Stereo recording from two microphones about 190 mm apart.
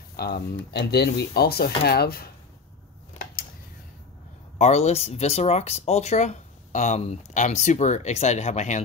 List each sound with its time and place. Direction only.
0.1 s speech: 55° left (ahead or behind)
4.6 s speech: 35° left (ahead or behind)